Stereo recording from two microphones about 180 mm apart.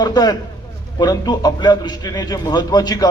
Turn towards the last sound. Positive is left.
turn(degrees=20)  # may be behind; listen again after turning